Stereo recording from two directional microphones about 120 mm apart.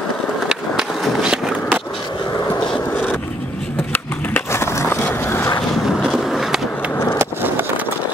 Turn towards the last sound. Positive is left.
turn(degrees=-15)  # may be behind; listen again after turning